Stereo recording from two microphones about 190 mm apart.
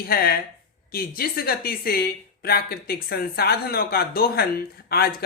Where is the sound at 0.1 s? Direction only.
55° left (ahead or behind).